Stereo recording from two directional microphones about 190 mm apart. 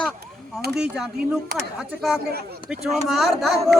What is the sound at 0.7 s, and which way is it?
Speech, 5° right (ahead or behind).